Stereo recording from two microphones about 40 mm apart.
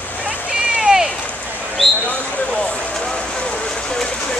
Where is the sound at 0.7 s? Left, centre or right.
Centre.